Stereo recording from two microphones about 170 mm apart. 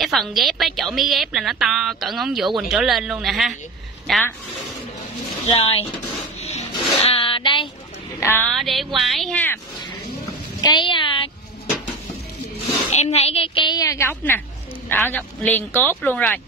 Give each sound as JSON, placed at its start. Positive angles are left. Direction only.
{"t": 0.0, "sound": "a woman's voice", "side_deg": 0}
{"t": 5.4, "sound": "speech", "side_deg": 35}
{"t": 7.0, "sound": "a sound", "side_deg": 35}
{"t": 8.2, "sound": "speech", "side_deg": 15}
{"t": 8.5, "sound": "a woman's voice", "side_deg": 0}
{"t": 10.6, "sound": "a sound", "side_deg": 25}
{"t": 12.9, "sound": "a woman's voice", "side_deg": 40}